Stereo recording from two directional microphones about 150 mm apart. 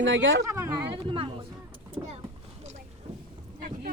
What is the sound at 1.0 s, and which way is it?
Speech, 40° right (ahead or behind).